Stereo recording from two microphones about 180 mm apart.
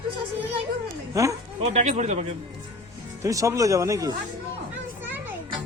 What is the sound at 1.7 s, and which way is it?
Speech, 40° right (ahead or behind).